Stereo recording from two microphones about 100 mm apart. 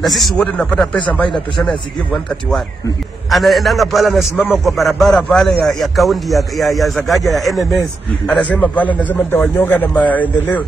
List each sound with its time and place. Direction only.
0.0 s a man's voice: centre (ahead or behind)
0.4 s a man's voice: 10° left (ahead or behind)
3.3 s a man's voice: centre (ahead or behind); by 10.6 s 15° left (ahead or behind)